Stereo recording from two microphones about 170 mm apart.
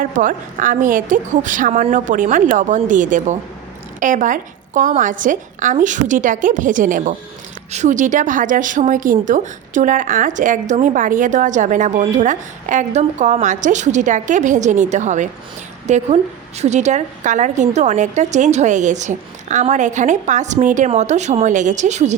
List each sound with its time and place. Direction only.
0.0 s speech: 50° right (ahead or behind)